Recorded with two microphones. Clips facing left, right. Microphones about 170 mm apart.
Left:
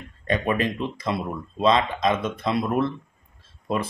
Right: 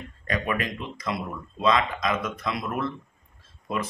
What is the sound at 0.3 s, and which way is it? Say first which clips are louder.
Speech: left 5 dB; 30° left (ahead or behind).